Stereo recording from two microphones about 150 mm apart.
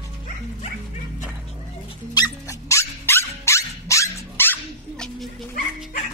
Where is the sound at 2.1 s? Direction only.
25° left (ahead or behind); by 5.3 s 5° left (ahead or behind).